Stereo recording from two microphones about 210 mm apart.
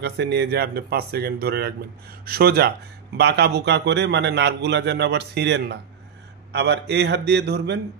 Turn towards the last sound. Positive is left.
turn(degrees=-50)  # may be behind; listen again after turning